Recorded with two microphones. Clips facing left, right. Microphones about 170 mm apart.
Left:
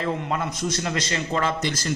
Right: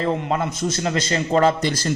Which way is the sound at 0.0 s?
30° right (ahead or behind).